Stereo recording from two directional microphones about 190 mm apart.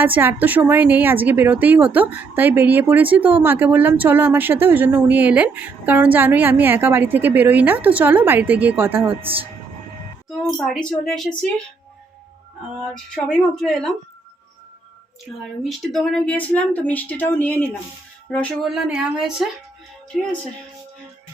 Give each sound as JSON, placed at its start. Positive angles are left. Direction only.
{"t": 0.0, "sound": "speech", "side_deg": -10}
{"t": 9.0, "sound": "speech", "side_deg": -30}
{"t": 10.6, "sound": "speech", "side_deg": 0}
{"t": 12.9, "sound": "speech", "side_deg": 5}
{"t": 15.6, "sound": "speech", "side_deg": 0}